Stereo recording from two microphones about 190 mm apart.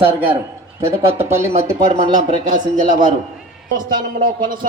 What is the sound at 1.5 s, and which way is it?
Speech, 40° right (ahead or behind).